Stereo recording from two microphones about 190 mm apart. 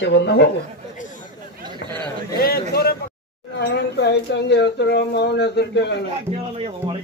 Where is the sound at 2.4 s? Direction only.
55° left (ahead or behind).